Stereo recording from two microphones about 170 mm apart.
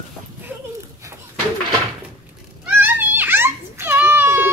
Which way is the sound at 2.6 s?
10° right (ahead or behind).